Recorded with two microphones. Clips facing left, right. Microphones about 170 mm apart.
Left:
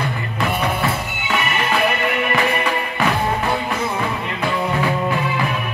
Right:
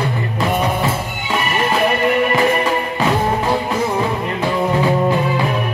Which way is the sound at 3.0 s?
20° right (ahead or behind).